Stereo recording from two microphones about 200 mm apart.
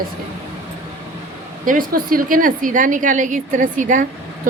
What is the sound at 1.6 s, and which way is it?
A woman's voice, 45° right (ahead or behind).